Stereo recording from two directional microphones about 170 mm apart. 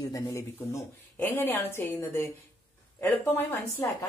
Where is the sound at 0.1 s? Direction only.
20° left (ahead or behind).